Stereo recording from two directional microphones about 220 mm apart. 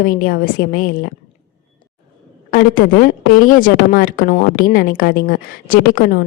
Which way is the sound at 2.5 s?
40° left (ahead or behind).